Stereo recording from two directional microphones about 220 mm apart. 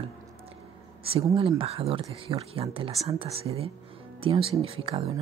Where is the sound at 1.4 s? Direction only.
25° right (ahead or behind).